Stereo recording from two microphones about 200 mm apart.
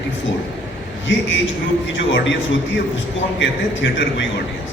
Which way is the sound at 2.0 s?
65° left (ahead or behind).